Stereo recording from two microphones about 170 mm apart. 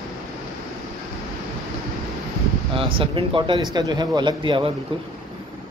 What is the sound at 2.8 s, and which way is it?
Speech, 30° right (ahead or behind).